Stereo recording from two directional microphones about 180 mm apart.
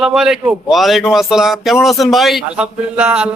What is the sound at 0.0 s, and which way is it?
Speech, 5° right (ahead or behind).